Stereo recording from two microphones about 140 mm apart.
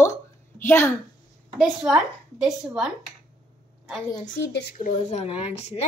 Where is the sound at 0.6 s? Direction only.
15° left (ahead or behind).